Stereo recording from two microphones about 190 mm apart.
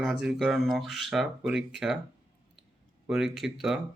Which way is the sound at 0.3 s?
Centre (ahead or behind).